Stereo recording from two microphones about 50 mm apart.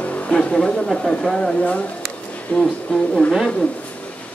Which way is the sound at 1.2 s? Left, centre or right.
Centre.